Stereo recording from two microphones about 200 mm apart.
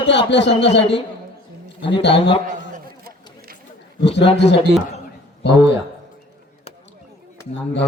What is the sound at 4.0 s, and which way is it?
Speech, 60° left (ahead or behind).